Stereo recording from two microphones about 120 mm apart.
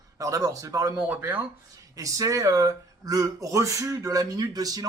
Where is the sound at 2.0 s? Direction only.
30° right (ahead or behind).